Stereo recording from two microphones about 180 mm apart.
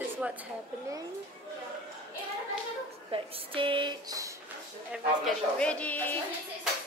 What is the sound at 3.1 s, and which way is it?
Speech, 30° right (ahead or behind).